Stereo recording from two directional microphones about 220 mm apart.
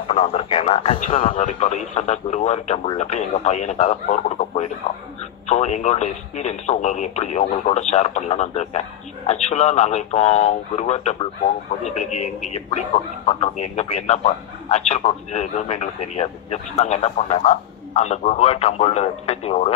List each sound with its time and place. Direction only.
0.1 s speech: 30° left (ahead or behind)